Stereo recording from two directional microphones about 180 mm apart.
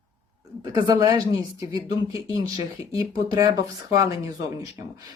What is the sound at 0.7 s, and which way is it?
Speech, 25° right (ahead or behind).